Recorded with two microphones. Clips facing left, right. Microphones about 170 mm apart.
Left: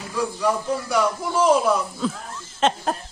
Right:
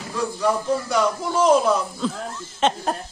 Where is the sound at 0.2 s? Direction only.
10° left (ahead or behind).